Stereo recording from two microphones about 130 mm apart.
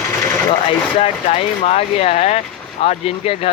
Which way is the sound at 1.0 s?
55° left (ahead or behind).